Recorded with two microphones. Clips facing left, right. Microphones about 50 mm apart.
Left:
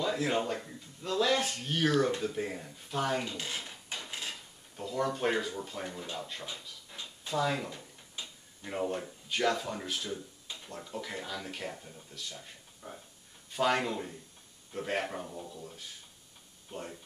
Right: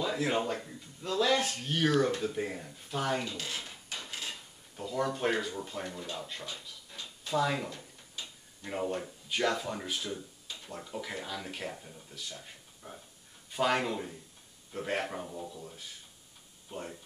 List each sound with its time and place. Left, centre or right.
0.0 s speech: centre
3.9 s hammer: left
4.3 s speech: centre
5.9 s speech: centre
6.9 s a sound: left
7.2 s speech: centre